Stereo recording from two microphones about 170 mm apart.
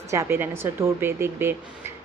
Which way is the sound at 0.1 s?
15° right (ahead or behind).